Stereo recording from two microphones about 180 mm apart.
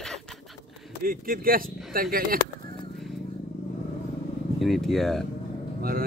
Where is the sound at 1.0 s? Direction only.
50° right (ahead or behind).